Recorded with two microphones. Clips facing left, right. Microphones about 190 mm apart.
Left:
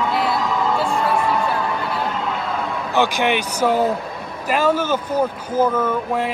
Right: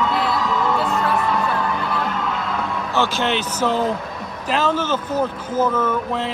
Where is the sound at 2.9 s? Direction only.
15° left (ahead or behind).